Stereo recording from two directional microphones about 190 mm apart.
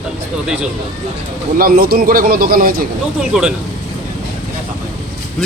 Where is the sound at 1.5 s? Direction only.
50° right (ahead or behind).